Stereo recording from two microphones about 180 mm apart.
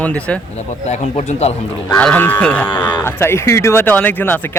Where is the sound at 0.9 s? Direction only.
35° left (ahead or behind).